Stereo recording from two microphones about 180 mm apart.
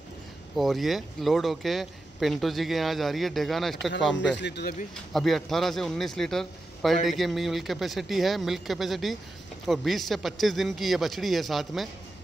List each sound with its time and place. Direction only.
0.6 s speech: centre (ahead or behind)
4.2 s speech: 75° left (ahead or behind)
5.1 s speech: centre (ahead or behind)